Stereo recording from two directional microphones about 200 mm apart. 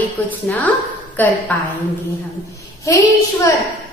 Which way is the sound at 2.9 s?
15° left (ahead or behind).